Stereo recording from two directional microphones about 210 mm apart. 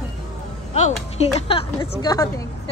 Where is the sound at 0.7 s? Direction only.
30° left (ahead or behind).